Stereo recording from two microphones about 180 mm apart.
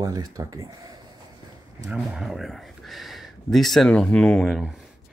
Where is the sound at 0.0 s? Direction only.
20° right (ahead or behind).